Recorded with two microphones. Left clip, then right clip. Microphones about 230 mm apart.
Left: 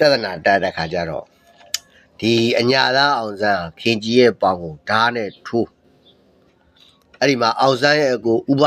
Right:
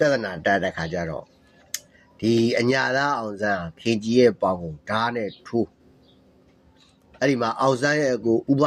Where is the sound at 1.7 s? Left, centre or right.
Centre.